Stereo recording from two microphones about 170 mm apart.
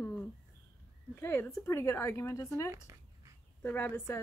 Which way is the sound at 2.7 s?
20° right (ahead or behind).